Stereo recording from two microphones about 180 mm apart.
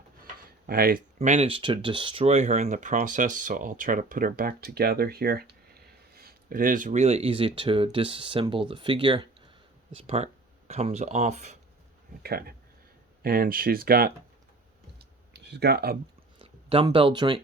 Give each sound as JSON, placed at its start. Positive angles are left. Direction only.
{"t": 0.7, "sound": "speech", "side_deg": -55}
{"t": 1.5, "sound": "speech", "side_deg": -30}
{"t": 12.2, "sound": "speech", "side_deg": -60}
{"t": 15.3, "sound": "speech", "side_deg": -70}
{"t": 16.4, "sound": "speech", "side_deg": -30}